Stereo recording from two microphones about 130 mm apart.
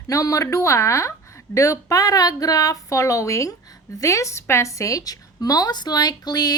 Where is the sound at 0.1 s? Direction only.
25° left (ahead or behind).